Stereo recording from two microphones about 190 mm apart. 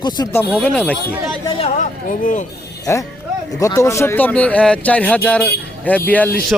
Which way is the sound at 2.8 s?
15° left (ahead or behind).